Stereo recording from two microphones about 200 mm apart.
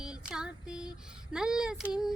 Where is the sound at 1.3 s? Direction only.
5° right (ahead or behind).